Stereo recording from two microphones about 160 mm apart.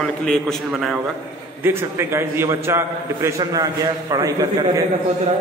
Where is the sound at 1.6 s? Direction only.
15° right (ahead or behind).